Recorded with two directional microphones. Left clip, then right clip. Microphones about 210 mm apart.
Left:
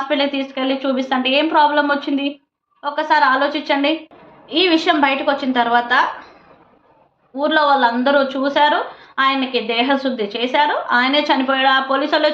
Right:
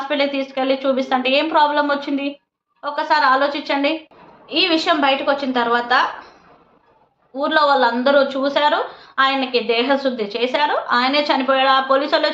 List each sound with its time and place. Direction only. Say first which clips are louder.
0.1 s a woman's voice: right 1 dB; centre (ahead or behind)
7.3 s a woman's voice: left 1 dB; 5° right (ahead or behind)